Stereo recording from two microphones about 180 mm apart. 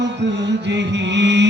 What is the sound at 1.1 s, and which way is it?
Music, 75° right (ahead or behind).